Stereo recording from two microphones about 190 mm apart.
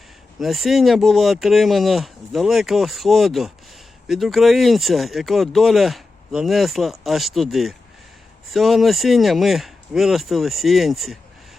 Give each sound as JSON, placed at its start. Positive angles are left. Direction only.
{"t": 0.3, "sound": "speech", "side_deg": 0}